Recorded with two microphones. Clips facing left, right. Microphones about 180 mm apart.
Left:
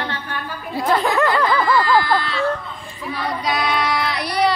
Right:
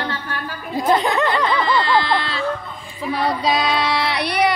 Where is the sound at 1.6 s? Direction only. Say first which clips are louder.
Left 1 dB; 25° right (ahead or behind).